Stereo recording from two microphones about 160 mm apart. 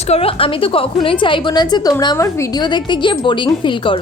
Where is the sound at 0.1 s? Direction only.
35° left (ahead or behind).